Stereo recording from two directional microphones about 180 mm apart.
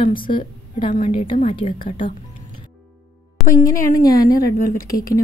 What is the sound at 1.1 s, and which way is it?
Speech, 30° left (ahead or behind).